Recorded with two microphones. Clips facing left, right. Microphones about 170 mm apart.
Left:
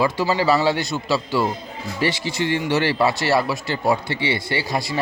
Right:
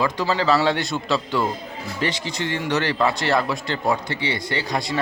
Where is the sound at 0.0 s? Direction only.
10° left (ahead or behind).